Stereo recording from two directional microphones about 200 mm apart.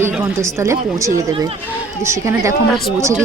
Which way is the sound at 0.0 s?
15° right (ahead or behind).